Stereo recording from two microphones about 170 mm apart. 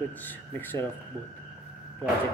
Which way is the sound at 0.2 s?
10° left (ahead or behind).